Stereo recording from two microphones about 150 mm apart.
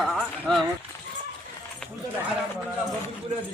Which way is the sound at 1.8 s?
5° left (ahead or behind).